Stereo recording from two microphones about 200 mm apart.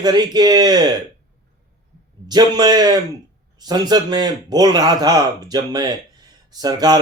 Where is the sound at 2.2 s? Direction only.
20° right (ahead or behind).